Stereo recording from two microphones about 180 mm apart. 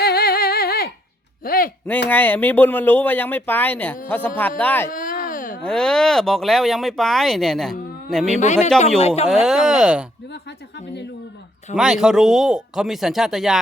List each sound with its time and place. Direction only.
0.0 s humming: 55° left (ahead or behind)
1.5 s a sound: 55° left (ahead or behind)
2.0 s speech: 10° left (ahead or behind)
4.9 s baby cry: 50° left (ahead or behind)
5.6 s speech: 5° left (ahead or behind)
8.4 s a man's voice: 40° left (ahead or behind)
9.2 s speech: centre (ahead or behind)
11.7 s speech: 5° right (ahead or behind)